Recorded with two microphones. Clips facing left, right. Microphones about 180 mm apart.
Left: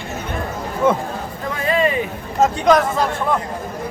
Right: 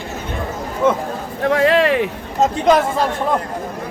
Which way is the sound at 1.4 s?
90° right.